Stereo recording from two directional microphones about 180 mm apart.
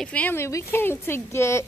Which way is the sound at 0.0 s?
10° left (ahead or behind).